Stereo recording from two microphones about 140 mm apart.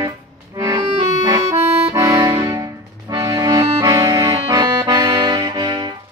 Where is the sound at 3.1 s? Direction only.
25° right (ahead or behind).